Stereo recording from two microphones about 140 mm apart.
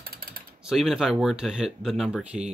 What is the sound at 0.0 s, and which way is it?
Typing, 90° right.